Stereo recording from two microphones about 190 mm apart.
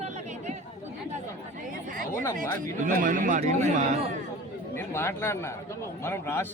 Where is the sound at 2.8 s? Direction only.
45° right (ahead or behind).